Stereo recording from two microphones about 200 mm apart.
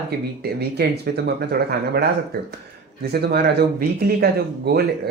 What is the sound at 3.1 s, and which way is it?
Speech, 50° right (ahead or behind).